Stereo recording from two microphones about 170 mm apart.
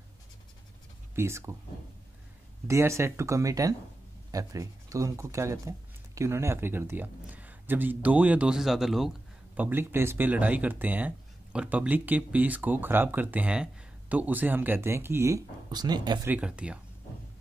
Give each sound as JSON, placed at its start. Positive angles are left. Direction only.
{"t": 1.1, "sound": "speech", "side_deg": -15}
{"t": 2.7, "sound": "speech", "side_deg": -15}
{"t": 16.3, "sound": "speech", "side_deg": -5}